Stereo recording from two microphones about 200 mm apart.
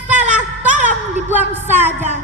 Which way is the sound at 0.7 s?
40° right (ahead or behind).